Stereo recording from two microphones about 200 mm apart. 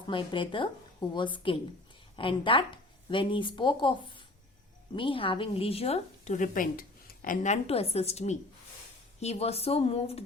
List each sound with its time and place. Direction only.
0.1 s a woman's voice: 25° left (ahead or behind)